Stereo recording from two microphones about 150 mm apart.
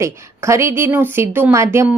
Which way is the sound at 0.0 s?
20° right (ahead or behind).